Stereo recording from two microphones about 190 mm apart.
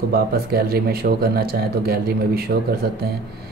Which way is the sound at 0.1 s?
55° right (ahead or behind).